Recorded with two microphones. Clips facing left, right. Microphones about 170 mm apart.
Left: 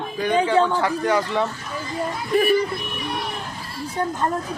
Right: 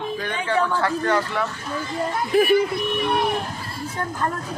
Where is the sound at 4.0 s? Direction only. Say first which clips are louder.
Left 5 dB; 20° left (ahead or behind).